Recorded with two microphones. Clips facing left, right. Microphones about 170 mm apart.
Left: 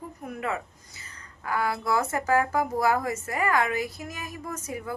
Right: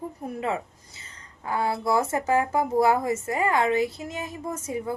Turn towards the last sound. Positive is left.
turn(degrees=-25)  # may be behind; listen again after turning